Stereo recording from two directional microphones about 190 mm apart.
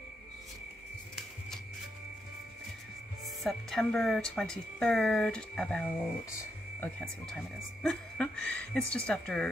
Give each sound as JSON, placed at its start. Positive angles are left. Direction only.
{"t": 3.4, "sound": "speech", "side_deg": 5}